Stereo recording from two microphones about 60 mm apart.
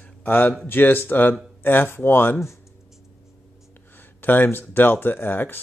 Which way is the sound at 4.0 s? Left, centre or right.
Left.